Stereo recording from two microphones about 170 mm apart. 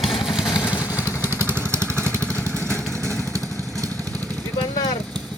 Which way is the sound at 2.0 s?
10° left (ahead or behind).